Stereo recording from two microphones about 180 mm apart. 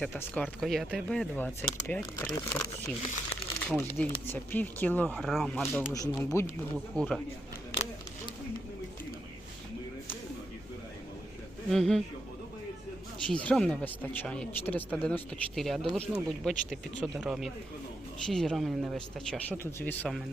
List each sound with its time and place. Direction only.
0.0 s speech: 10° left (ahead or behind)
2.2 s speech: 20° left (ahead or behind)
3.7 s speech: 10° left (ahead or behind)
5.9 s speech: 20° left (ahead or behind)
7.0 s speech: 5° left (ahead or behind)
11.7 s speech: centre (ahead or behind)
13.2 s speech: 5° left (ahead or behind)